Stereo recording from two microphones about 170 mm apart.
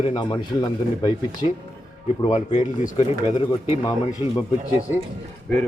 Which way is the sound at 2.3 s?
45° left (ahead or behind).